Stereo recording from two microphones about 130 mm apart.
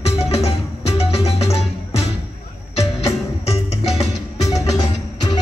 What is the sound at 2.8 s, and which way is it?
Music, 55° left (ahead or behind).